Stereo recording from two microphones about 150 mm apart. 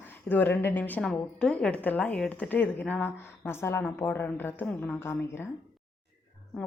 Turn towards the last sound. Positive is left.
turn(degrees=15)  # may be behind; listen again after turning